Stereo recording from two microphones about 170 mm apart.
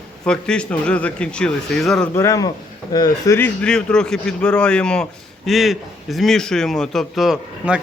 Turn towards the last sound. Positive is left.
turn(degrees=-5)  # may be behind; listen again after turning